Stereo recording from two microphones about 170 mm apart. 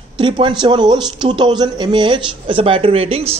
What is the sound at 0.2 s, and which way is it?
A man's voice, 30° right (ahead or behind).